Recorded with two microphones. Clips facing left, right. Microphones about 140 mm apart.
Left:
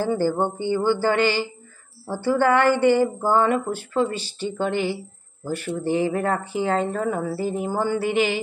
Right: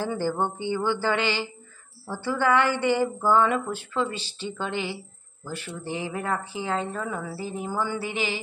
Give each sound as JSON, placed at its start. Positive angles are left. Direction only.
{"t": 0.0, "sound": "speech", "side_deg": 40}